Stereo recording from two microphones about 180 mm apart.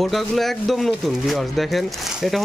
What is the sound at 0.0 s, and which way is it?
Speech, centre (ahead or behind).